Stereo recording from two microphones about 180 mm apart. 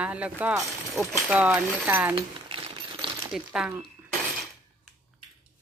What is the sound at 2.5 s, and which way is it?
Coin, 30° right (ahead or behind).